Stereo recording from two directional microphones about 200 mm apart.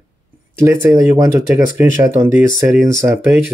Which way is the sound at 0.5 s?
10° right (ahead or behind).